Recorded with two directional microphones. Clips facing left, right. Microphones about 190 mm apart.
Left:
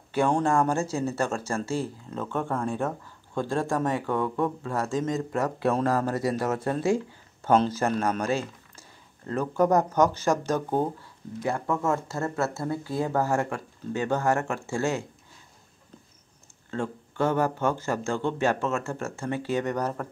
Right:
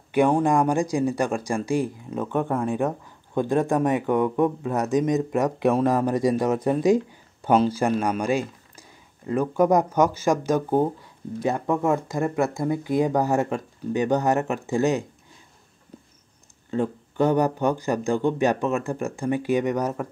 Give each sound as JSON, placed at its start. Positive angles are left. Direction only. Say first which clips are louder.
{"t": 0.1, "sound": "speech", "louder": "right 4 dB", "side_deg": -15}
{"t": 16.7, "sound": "speech", "louder": "right 6 dB", "side_deg": -15}